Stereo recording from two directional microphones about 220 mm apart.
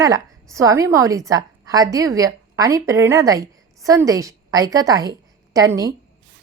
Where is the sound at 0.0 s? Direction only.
15° right (ahead or behind).